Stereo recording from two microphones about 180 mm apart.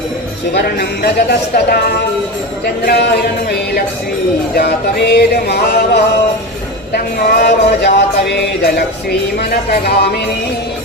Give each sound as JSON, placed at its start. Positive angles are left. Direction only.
{"t": 0.5, "sound": "speech", "side_deg": 65}
{"t": 4.5, "sound": "speech", "side_deg": 65}